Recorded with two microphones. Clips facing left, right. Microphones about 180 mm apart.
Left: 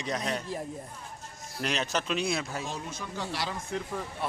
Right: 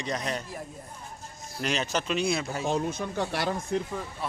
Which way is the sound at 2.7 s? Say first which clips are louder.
Right 9 dB; 55° right (ahead or behind).